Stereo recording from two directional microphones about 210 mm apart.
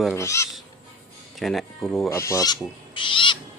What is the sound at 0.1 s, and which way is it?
Speech, 15° left (ahead or behind).